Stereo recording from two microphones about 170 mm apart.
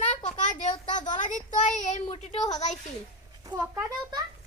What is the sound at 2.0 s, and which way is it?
Speech, 35° left (ahead or behind).